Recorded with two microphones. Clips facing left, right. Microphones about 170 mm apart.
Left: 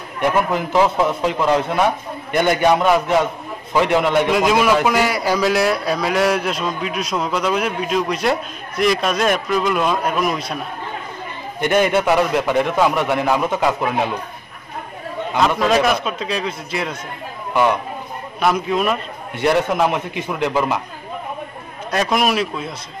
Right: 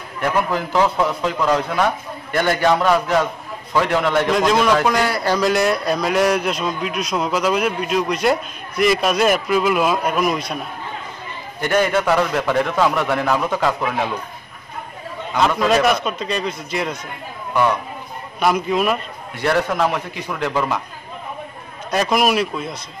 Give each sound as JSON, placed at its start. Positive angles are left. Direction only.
{"t": 0.2, "sound": "a man's voice", "side_deg": 20}
{"t": 11.6, "sound": "a man's voice", "side_deg": 15}
{"t": 15.3, "sound": "a man's voice", "side_deg": 0}
{"t": 18.4, "sound": "a man's voice", "side_deg": 0}
{"t": 19.3, "sound": "a man's voice", "side_deg": 20}
{"t": 21.9, "sound": "a man's voice", "side_deg": 0}